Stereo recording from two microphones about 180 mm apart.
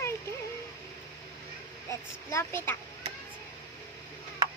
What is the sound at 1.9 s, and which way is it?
Speech, 15° left (ahead or behind).